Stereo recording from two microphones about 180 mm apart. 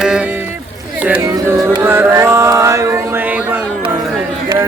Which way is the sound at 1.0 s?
15° right (ahead or behind).